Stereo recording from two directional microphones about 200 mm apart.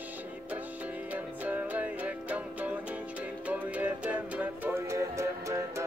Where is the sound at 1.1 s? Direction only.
10° right (ahead or behind).